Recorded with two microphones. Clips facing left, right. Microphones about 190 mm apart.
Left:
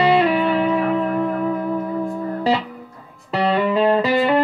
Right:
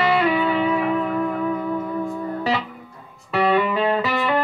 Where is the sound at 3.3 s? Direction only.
35° left (ahead or behind).